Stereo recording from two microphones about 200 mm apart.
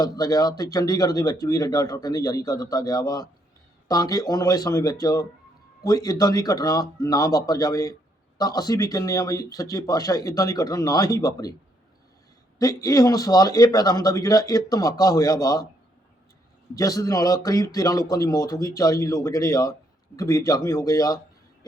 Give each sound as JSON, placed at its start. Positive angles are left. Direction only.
{"t": 0.0, "sound": "speech", "side_deg": 20}
{"t": 12.5, "sound": "speech", "side_deg": 15}
{"t": 16.7, "sound": "speech", "side_deg": 15}